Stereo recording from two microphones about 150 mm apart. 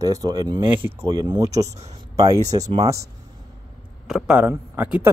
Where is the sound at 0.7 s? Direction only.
15° right (ahead or behind).